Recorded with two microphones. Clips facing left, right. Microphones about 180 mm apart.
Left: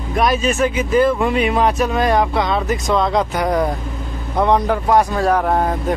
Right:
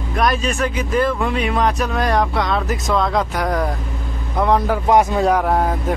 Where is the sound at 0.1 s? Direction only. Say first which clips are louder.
Left 2 dB; centre (ahead or behind).